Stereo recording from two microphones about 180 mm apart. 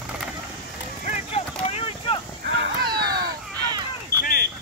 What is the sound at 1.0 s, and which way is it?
Vehicle, 35° left (ahead or behind).